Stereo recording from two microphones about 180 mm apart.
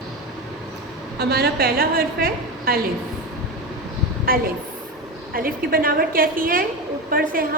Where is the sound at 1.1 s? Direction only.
60° right (ahead or behind).